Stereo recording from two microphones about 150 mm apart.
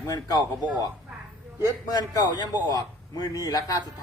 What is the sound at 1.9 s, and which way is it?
A man's voice, 25° left (ahead or behind).